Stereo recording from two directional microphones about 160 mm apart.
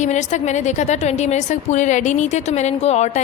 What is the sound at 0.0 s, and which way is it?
A woman's voice, 45° left (ahead or behind).